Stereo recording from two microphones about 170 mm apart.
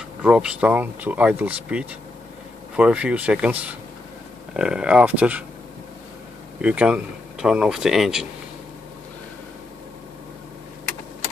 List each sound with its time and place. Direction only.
0.2 s speech: 5° right (ahead or behind)
6.6 s speech: 10° right (ahead or behind)